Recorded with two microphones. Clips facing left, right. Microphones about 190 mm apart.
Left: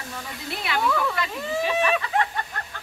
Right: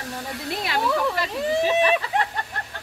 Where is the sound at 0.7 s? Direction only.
30° right (ahead or behind).